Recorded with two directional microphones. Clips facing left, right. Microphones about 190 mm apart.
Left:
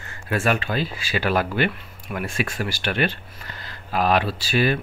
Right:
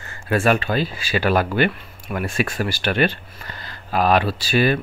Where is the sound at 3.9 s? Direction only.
55° right (ahead or behind).